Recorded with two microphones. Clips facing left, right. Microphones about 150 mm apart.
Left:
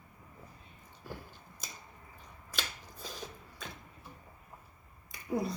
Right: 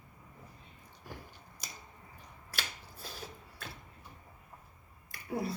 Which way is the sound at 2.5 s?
10° right (ahead or behind).